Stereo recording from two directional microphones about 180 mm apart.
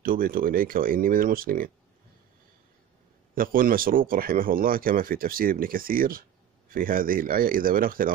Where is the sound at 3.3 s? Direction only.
50° right (ahead or behind).